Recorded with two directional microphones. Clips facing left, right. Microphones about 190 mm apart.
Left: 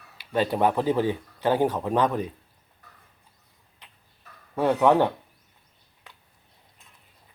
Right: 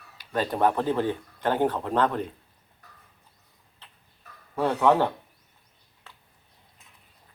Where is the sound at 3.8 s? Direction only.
15° left (ahead or behind).